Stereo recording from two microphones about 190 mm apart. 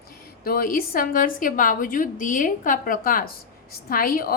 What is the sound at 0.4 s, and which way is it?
A woman's voice, 50° left (ahead or behind).